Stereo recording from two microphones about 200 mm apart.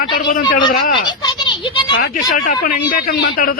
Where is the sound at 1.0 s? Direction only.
25° left (ahead or behind).